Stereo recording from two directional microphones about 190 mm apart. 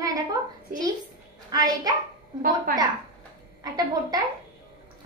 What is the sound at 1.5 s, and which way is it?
Speech, 20° right (ahead or behind).